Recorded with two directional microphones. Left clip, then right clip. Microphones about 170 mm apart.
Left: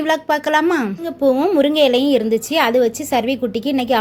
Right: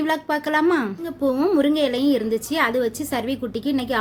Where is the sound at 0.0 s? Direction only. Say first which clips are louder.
Left 5 dB; 15° left (ahead or behind).